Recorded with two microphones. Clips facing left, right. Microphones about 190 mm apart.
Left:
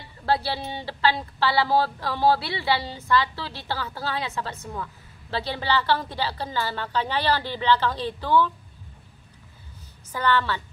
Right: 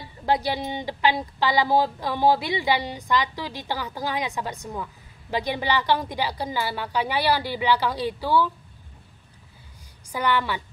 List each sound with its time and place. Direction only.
0.2 s speech: 15° right (ahead or behind)
10.1 s speech: 15° right (ahead or behind)